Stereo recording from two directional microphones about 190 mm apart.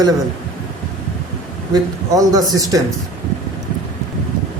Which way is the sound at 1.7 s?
20° right (ahead or behind).